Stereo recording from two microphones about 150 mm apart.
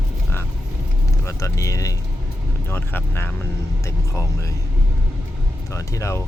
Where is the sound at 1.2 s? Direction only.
20° left (ahead or behind).